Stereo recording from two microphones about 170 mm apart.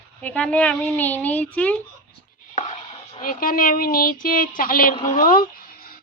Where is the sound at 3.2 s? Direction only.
55° left (ahead or behind).